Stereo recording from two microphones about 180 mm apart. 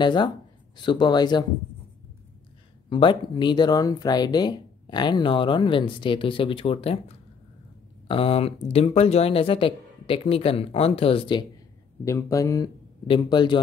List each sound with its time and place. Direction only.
0.0 s speech: 25° left (ahead or behind)
2.9 s speech: 25° left (ahead or behind)
8.1 s speech: 30° left (ahead or behind)
12.0 s speech: 15° left (ahead or behind)